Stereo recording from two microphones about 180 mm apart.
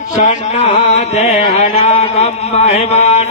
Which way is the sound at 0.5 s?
40° left (ahead or behind).